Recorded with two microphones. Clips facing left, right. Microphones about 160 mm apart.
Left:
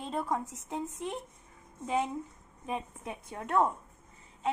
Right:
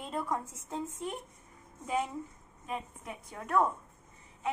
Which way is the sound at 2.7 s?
25° left (ahead or behind).